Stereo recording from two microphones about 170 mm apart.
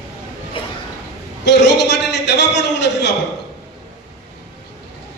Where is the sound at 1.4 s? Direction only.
90° left.